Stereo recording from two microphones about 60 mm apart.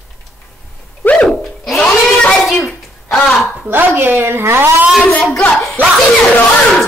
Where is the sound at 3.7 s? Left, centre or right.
Right.